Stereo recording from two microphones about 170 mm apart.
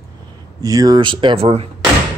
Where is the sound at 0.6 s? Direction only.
20° right (ahead or behind).